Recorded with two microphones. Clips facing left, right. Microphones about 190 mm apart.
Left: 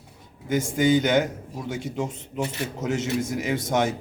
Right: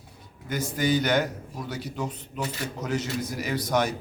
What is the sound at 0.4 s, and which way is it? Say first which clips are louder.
A man's voice: left 5 dB; 20° left (ahead or behind).